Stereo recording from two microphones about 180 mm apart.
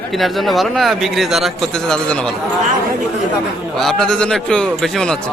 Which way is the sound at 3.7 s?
5° left (ahead or behind).